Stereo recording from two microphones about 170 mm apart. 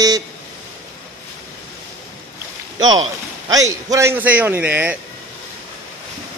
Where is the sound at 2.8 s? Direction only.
25° right (ahead or behind); by 4.9 s 10° right (ahead or behind).